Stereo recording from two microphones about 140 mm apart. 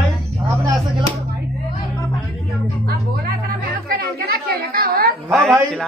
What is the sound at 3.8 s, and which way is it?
Music, 90° right.